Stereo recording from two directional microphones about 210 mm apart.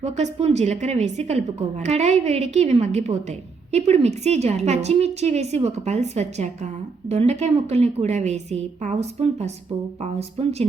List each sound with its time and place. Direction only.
0.0 s a woman's voice: 30° right (ahead or behind)